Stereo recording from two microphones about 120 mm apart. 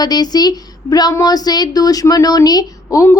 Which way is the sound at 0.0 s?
35° left (ahead or behind).